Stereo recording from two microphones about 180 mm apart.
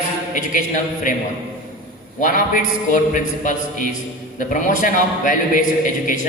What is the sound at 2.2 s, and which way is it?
A man's voice, 45° left (ahead or behind).